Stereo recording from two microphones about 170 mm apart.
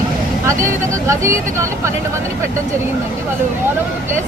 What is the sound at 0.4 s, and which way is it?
Speech, 15° right (ahead or behind).